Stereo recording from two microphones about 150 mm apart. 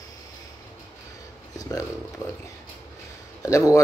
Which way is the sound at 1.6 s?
20° left (ahead or behind).